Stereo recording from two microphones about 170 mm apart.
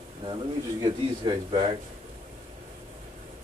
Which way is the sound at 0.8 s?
25° right (ahead or behind).